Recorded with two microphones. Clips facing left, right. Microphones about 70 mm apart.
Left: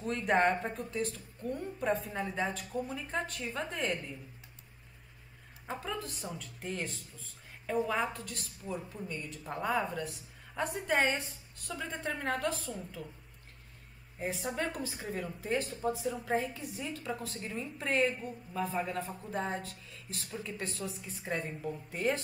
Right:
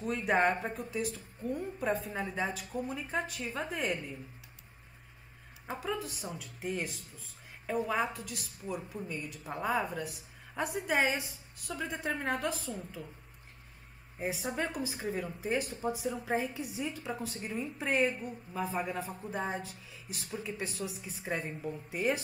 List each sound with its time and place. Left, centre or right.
0.0 s a woman's voice: centre
5.7 s a woman's voice: centre
14.1 s speech: centre
14.4 s a woman's voice: right
14.7 s a woman's voice: centre
21.9 s a woman's voice: centre